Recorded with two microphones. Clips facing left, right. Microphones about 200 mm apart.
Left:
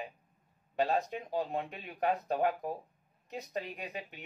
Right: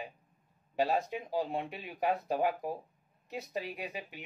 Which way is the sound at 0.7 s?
10° right (ahead or behind).